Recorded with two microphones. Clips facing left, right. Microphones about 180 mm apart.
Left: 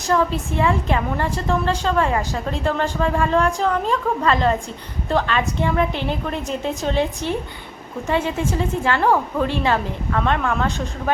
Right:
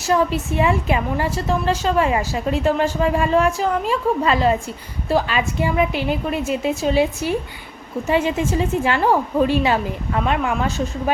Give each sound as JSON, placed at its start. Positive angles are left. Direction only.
{"t": 0.1, "sound": "a woman's voice", "side_deg": -15}